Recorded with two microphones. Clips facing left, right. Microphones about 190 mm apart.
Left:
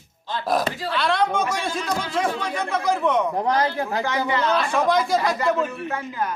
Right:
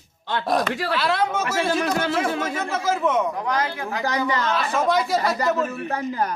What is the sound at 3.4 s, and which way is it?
Speech, 30° left (ahead or behind).